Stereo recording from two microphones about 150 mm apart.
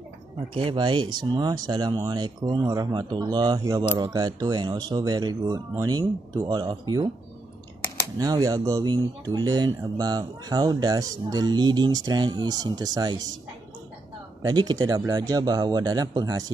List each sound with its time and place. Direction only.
0.6 s speech: 30° right (ahead or behind)
8.2 s speech: 25° right (ahead or behind)
14.4 s speech: 30° right (ahead or behind)